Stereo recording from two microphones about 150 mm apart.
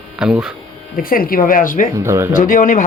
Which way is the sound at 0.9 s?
70° left (ahead or behind).